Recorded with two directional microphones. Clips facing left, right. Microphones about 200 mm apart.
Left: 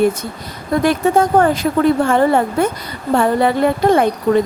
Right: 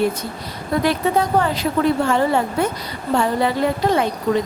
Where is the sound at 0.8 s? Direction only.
50° left (ahead or behind).